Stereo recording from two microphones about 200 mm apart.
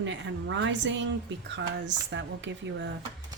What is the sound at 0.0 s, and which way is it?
A woman's voice, 65° right (ahead or behind).